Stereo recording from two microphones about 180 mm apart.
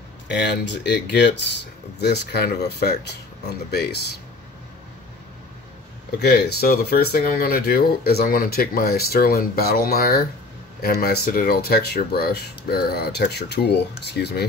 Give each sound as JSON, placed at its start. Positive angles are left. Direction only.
{"t": 0.7, "sound": "speech", "side_deg": 70}
{"t": 6.1, "sound": "speech", "side_deg": 70}